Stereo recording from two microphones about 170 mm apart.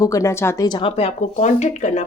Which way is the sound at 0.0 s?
20° left (ahead or behind).